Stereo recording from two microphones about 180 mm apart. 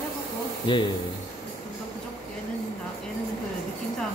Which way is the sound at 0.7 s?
25° left (ahead or behind).